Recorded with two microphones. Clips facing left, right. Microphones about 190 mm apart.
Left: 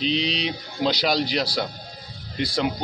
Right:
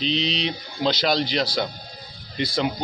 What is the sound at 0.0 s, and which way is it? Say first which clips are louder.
A man's voice: even; 5° left (ahead or behind).